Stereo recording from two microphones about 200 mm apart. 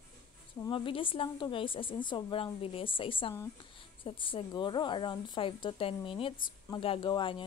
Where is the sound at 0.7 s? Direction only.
25° left (ahead or behind).